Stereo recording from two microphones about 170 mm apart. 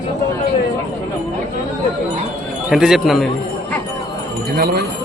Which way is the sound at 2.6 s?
5° right (ahead or behind).